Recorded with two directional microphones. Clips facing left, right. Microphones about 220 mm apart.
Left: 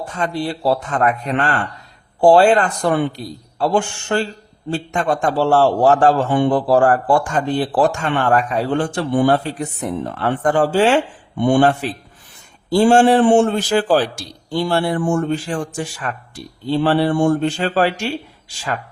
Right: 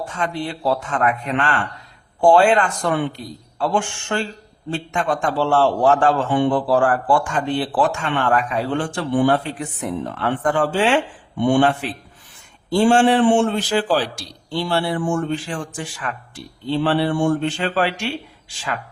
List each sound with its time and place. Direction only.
0.1 s a man's voice: 35° left (ahead or behind)